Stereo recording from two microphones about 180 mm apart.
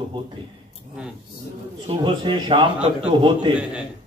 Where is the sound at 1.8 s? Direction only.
25° right (ahead or behind).